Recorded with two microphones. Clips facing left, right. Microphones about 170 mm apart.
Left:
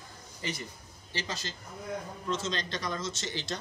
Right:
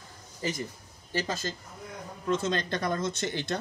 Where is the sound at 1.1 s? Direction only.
50° right (ahead or behind).